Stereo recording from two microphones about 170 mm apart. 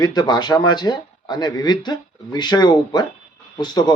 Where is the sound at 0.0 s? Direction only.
25° left (ahead or behind).